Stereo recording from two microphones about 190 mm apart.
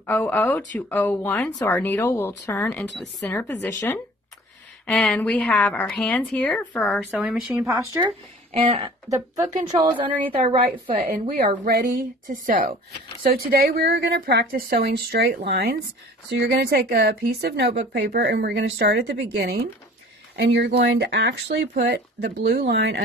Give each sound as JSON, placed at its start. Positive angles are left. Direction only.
{"t": 0.0, "sound": "speech", "side_deg": 10}
{"t": 4.8, "sound": "a woman's voice", "side_deg": 5}
{"t": 7.8, "sound": "speech", "side_deg": -15}
{"t": 8.5, "sound": "a woman's voice", "side_deg": -30}
{"t": 11.0, "sound": "a woman's voice", "side_deg": -50}